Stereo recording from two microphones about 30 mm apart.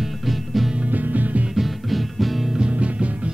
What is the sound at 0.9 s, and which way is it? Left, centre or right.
Music, right.